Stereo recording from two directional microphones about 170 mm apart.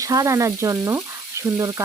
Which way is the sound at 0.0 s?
20° right (ahead or behind).